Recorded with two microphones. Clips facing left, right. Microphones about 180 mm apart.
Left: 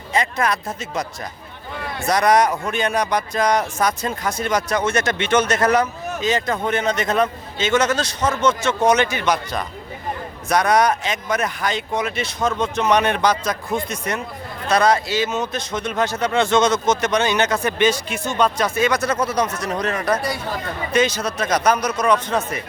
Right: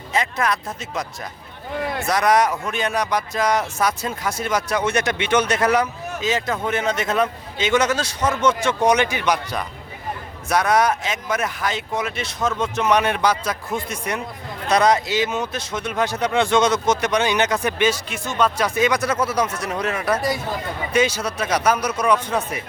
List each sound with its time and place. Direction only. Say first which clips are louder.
0.1 s speech: left 1 dB; centre (ahead or behind)
2.0 s speech: left 2 dB; centre (ahead or behind)